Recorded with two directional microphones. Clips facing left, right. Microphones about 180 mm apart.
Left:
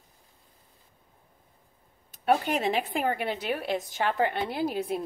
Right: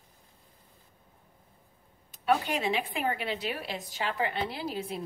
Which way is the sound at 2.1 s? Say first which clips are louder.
Left 3 dB; 45° left (ahead or behind).